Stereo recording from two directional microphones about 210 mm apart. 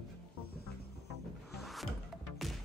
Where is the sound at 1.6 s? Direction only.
Centre (ahead or behind).